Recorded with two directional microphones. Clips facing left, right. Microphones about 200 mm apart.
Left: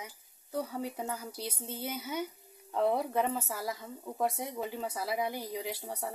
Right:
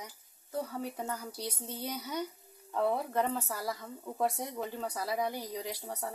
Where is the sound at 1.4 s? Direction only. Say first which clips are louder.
Even; 25° left (ahead or behind).